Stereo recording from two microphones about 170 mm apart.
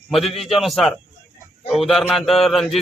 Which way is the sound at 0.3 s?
35° left (ahead or behind).